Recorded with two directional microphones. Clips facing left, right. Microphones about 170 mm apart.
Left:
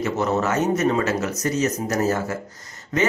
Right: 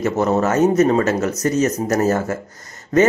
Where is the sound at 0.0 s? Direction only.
45° right (ahead or behind).